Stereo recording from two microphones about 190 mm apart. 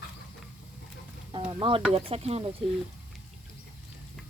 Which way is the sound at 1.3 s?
25° right (ahead or behind).